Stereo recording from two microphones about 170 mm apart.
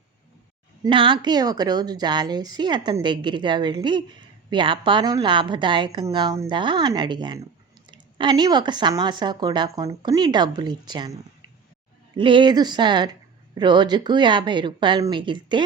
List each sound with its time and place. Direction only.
0.9 s a woman's voice: 30° right (ahead or behind)